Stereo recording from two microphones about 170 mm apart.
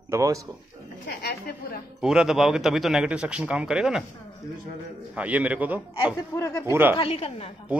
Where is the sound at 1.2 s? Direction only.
70° left (ahead or behind).